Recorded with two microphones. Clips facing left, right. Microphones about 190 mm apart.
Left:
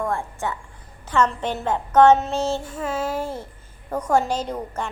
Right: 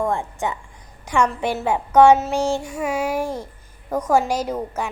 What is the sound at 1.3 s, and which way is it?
Child singing, 5° right (ahead or behind).